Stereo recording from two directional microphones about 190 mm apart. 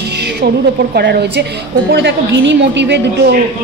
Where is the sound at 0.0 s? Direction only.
60° right (ahead or behind).